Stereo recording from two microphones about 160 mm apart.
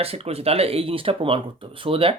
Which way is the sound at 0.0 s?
40° right (ahead or behind).